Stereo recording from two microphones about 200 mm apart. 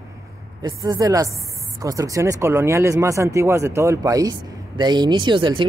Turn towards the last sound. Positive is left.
turn(degrees=-25)  # may be behind; listen again after turning